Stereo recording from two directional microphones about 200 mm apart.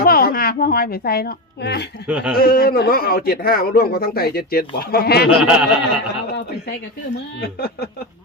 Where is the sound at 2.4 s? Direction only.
50° left (ahead or behind).